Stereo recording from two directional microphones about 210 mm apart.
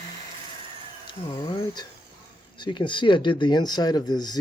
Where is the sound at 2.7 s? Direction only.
25° left (ahead or behind).